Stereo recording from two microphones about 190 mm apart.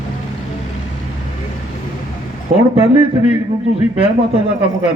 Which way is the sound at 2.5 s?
40° right (ahead or behind).